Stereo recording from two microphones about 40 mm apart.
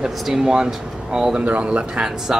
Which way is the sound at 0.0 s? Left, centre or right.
Centre.